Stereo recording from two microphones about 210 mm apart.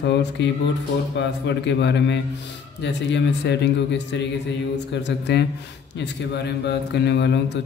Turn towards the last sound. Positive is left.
turn(degrees=55)  # may be behind; listen again after turning